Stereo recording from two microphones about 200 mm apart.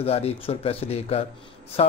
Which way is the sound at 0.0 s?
30° left (ahead or behind).